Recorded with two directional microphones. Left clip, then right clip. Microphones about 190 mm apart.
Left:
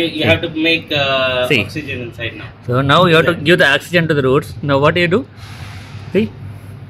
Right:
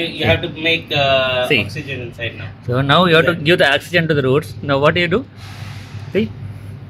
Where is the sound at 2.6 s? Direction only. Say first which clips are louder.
Left 2 dB; 10° left (ahead or behind).